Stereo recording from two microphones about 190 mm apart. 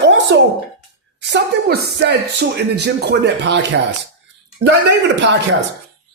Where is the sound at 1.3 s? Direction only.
55° right (ahead or behind).